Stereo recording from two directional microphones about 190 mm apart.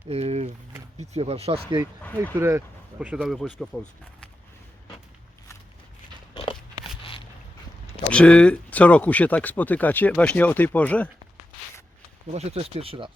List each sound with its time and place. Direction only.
0.1 s a sound: 35° right (ahead or behind)
0.9 s speech: 35° right (ahead or behind)
2.3 s speech: 15° right (ahead or behind)
6.3 s a sound: 25° left (ahead or behind)
8.1 s speech: 5° left (ahead or behind)
12.3 s speech: 35° right (ahead or behind)